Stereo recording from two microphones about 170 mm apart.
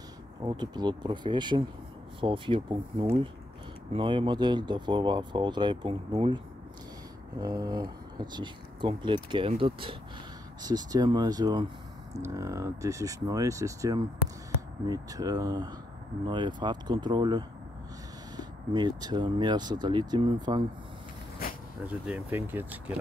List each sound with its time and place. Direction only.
0.4 s speech: 25° right (ahead or behind)
21.8 s speech: 10° right (ahead or behind)